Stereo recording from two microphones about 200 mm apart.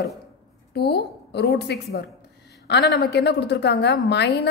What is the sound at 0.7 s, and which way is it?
A woman's voice, 55° left (ahead or behind).